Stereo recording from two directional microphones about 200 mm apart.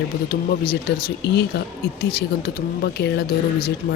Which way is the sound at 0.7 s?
50° left (ahead or behind).